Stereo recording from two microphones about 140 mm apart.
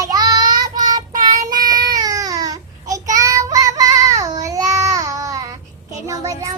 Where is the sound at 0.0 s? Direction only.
25° right (ahead or behind).